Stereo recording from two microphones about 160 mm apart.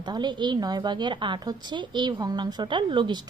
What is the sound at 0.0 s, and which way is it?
A woman's voice, 25° right (ahead or behind).